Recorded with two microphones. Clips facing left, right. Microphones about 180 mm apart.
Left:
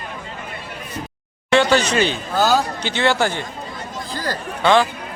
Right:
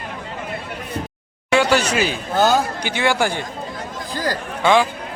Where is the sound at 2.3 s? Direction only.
20° right (ahead or behind).